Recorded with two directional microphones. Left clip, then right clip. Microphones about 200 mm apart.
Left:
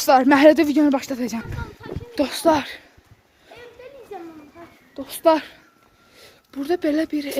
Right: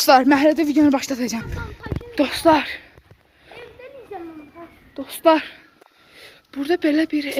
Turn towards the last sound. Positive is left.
turn(degrees=25)  # may be behind; listen again after turning